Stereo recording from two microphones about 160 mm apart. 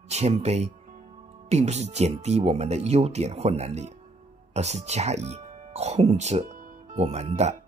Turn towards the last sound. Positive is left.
turn(degrees=-45)  # may be behind; listen again after turning